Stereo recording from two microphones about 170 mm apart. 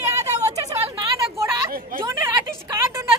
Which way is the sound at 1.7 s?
60° right (ahead or behind).